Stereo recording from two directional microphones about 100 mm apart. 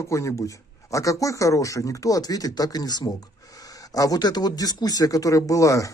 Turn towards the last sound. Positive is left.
turn(degrees=35)  # may be behind; listen again after turning